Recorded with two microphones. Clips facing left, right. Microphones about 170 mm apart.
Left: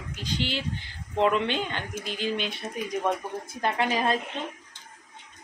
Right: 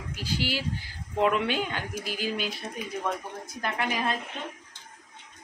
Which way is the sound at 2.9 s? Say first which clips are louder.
Left 5 dB; 25° left (ahead or behind).